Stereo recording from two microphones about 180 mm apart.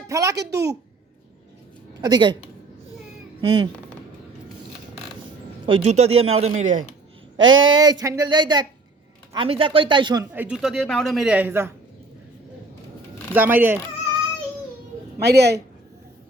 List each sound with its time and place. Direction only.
0.1 s a sound: 20° right (ahead or behind)
2.0 s speech: 25° right (ahead or behind)
3.4 s speech: 25° right (ahead or behind)
5.6 s speech: 35° right (ahead or behind)
7.3 s speech: 90° right
7.6 s speech: 25° right (ahead or behind)
10.3 s speech: 5° right (ahead or behind)
13.3 s speech: 10° right (ahead or behind)
15.2 s a woman's voice: 65° right (ahead or behind)